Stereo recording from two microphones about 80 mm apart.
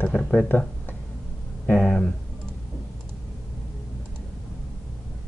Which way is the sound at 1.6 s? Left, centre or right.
Centre.